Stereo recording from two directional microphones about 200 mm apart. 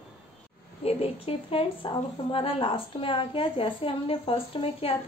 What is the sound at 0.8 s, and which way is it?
Speech, 30° left (ahead or behind).